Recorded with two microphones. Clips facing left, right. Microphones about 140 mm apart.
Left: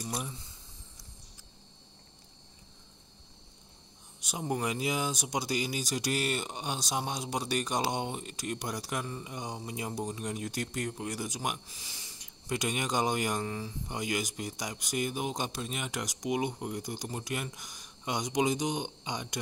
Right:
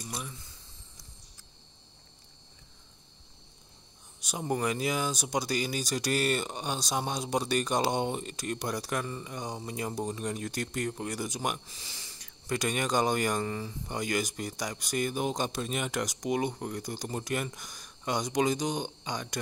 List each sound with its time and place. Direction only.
4.4 s speech: 10° left (ahead or behind)